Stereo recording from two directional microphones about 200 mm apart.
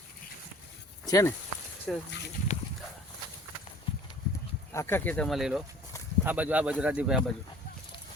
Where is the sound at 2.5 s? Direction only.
40° left (ahead or behind).